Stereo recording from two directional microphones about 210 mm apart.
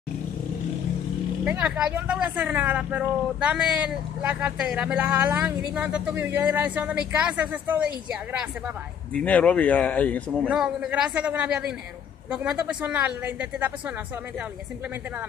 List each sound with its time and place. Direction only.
1.4 s speech: 5° right (ahead or behind)
9.1 s speech: 5° left (ahead or behind)
10.6 s a man's voice: 5° right (ahead or behind)